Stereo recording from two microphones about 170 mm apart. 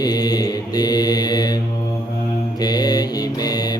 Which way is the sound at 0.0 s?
25° left (ahead or behind).